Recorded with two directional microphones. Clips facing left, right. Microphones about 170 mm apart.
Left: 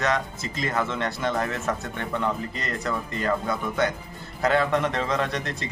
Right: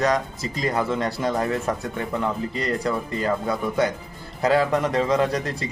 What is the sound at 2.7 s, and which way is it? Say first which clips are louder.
Speech: right 4 dB; 35° right (ahead or behind).